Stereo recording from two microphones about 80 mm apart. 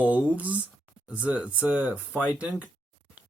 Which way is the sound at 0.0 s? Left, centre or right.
Right.